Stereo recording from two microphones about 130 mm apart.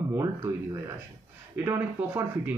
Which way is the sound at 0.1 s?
20° right (ahead or behind).